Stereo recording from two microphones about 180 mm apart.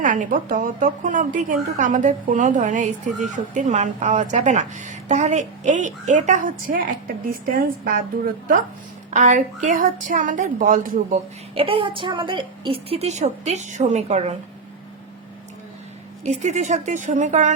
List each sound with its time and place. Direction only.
0.0 s a woman's voice: 45° right (ahead or behind)
9.0 s a woman's voice: 40° right (ahead or behind)
11.5 s a woman's voice: 30° right (ahead or behind)
16.2 s a woman's voice: 40° right (ahead or behind)